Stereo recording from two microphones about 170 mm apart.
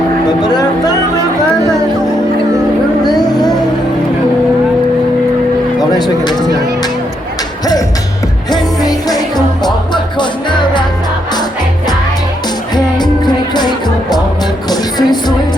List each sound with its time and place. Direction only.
0.4 s music: 25° left (ahead or behind)
3.0 s music: 25° left (ahead or behind)
5.8 s speech: 25° left (ahead or behind)
8.4 s music: 25° left (ahead or behind)
12.7 s music: 25° left (ahead or behind)